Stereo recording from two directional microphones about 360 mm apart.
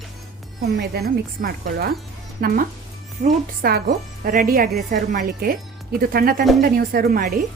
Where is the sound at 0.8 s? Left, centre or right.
Right.